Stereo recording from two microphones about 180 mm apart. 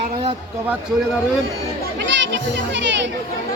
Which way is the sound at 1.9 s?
90° right.